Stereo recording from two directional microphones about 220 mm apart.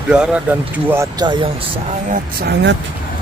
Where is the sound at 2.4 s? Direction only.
50° right (ahead or behind).